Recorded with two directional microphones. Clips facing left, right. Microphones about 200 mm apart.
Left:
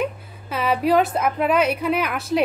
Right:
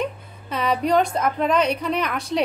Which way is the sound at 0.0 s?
5° left (ahead or behind).